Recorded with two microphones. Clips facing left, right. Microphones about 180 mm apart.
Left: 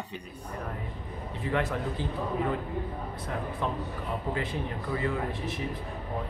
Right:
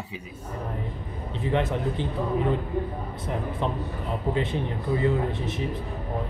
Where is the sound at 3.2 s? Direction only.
25° right (ahead or behind).